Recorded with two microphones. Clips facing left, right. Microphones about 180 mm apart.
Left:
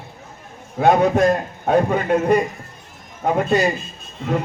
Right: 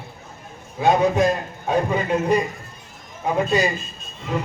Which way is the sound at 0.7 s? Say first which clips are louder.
Left 2 dB; 60° left (ahead or behind).